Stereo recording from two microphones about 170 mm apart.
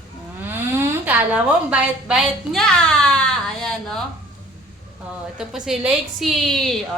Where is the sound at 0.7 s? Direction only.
10° right (ahead or behind).